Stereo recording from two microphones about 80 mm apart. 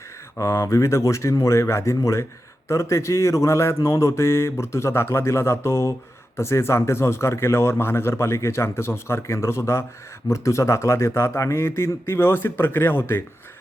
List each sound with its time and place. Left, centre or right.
0.3 s speech: left